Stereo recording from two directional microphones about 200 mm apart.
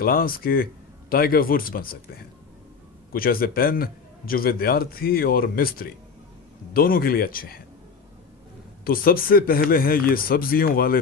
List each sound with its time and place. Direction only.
0.0 s a man's voice: 45° left (ahead or behind)
8.8 s a man's voice: 45° left (ahead or behind)